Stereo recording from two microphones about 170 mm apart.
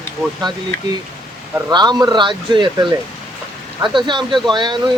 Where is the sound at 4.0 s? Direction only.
25° right (ahead or behind).